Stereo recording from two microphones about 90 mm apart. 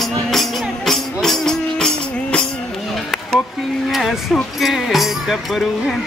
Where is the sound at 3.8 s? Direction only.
Centre (ahead or behind).